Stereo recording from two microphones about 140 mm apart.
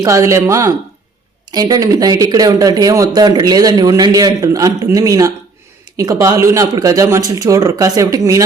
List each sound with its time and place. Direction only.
0.0 s speech: 20° right (ahead or behind)